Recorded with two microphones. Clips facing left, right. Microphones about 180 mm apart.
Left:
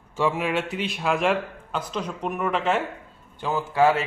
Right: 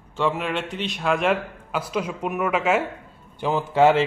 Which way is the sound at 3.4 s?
20° right (ahead or behind).